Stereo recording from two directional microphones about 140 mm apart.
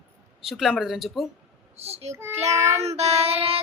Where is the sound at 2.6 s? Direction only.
20° right (ahead or behind).